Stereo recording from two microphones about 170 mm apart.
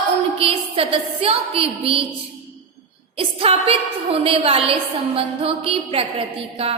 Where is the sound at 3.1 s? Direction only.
35° right (ahead or behind).